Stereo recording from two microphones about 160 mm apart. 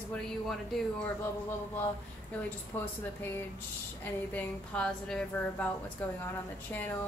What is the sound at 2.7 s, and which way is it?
Speech, 10° left (ahead or behind).